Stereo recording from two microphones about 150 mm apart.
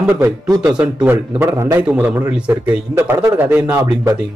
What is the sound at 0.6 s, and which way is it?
Speech, 5° right (ahead or behind).